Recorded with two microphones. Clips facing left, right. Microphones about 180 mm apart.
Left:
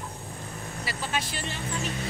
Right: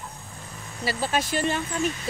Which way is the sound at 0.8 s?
35° right (ahead or behind).